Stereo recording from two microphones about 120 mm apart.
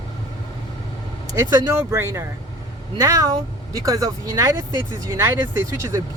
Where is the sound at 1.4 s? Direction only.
30° right (ahead or behind).